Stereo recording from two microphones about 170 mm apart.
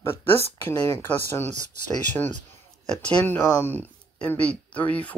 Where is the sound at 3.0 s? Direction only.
10° left (ahead or behind).